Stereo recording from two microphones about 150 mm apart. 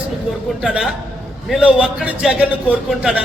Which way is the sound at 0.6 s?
5° right (ahead or behind).